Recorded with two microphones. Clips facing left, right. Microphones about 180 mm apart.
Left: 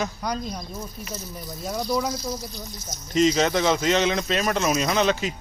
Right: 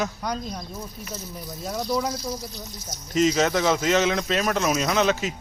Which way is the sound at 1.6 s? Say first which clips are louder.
Left 1 dB; 5° left (ahead or behind).